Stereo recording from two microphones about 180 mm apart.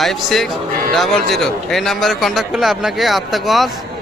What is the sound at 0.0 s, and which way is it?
A man's voice, centre (ahead or behind).